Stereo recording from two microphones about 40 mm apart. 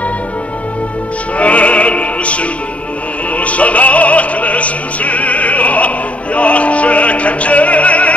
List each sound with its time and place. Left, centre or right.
1.4 s music: left